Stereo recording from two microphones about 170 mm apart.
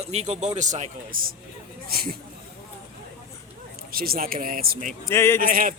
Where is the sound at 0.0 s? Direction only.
40° right (ahead or behind).